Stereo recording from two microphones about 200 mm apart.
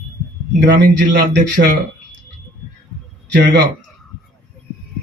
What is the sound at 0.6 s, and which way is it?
A man's voice, 55° right (ahead or behind).